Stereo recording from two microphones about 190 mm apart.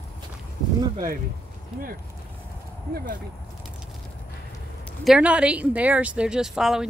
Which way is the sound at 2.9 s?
50° right (ahead or behind).